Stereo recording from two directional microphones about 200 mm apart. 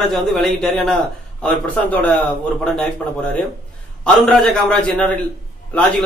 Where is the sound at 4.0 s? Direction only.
5° left (ahead or behind).